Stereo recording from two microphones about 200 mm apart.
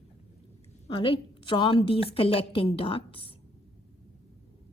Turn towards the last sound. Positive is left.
turn(degrees=25)  # may be behind; listen again after turning